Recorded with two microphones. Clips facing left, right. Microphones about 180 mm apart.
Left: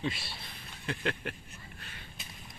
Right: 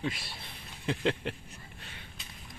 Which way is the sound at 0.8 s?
20° right (ahead or behind).